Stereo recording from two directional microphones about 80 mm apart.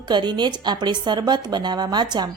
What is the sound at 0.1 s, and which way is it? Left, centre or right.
Speech, right.